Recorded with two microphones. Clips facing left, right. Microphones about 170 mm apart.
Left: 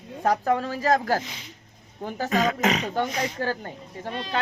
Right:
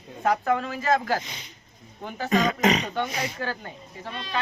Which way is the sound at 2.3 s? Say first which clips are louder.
Right 2 dB; 5° left (ahead or behind).